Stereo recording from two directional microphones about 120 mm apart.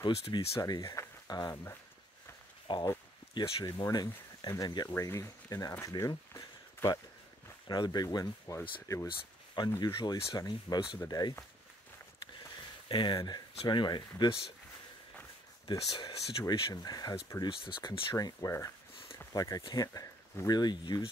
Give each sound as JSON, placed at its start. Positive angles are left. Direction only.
{"t": 0.0, "sound": "speech", "side_deg": 40}
{"t": 1.5, "sound": "speech", "side_deg": 20}
{"t": 2.7, "sound": "speech", "side_deg": 40}
{"t": 4.8, "sound": "speech", "side_deg": 20}
{"t": 9.6, "sound": "speech", "side_deg": 40}
{"t": 12.8, "sound": "speech", "side_deg": 40}
{"t": 15.6, "sound": "speech", "side_deg": 35}
{"t": 17.5, "sound": "speech", "side_deg": 45}
{"t": 18.1, "sound": "speech", "side_deg": 25}